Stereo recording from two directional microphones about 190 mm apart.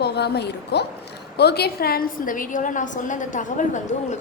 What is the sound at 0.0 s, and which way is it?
A woman's voice, 60° left (ahead or behind).